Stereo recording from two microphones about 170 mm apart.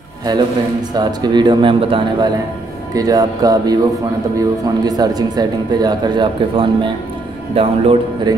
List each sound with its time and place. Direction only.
0.3 s speech: 25° right (ahead or behind)